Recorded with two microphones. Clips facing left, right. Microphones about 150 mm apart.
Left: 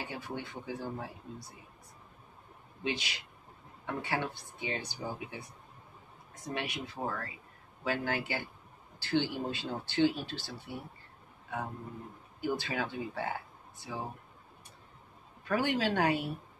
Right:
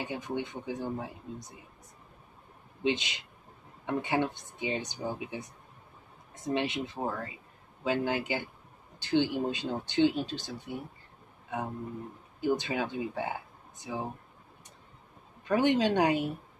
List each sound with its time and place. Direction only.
0.0 s speech: 20° right (ahead or behind)
2.8 s speech: 20° right (ahead or behind)
15.4 s speech: 20° right (ahead or behind)